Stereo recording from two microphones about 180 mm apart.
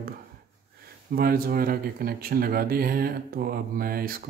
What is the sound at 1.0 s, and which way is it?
Mantra, 55° right (ahead or behind).